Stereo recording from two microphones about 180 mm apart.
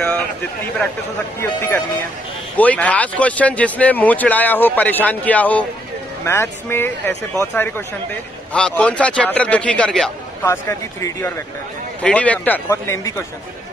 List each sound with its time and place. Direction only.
1.4 s speech: 10° left (ahead or behind)
10.4 s speech: 15° left (ahead or behind)